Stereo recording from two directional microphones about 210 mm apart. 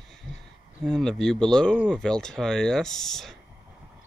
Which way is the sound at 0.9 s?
Centre (ahead or behind).